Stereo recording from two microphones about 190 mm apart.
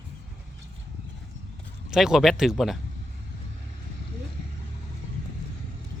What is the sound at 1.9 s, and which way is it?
Speech, 5° right (ahead or behind).